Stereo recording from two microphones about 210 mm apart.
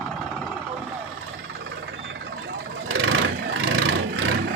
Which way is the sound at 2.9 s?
75° right (ahead or behind).